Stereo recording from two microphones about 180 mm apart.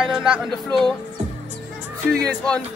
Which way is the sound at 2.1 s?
5° left (ahead or behind).